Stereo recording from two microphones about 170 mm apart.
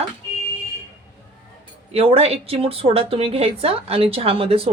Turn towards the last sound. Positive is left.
turn(degrees=-35)  # may be behind; listen again after turning